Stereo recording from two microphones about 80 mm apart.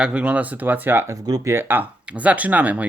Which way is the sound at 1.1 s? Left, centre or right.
Right.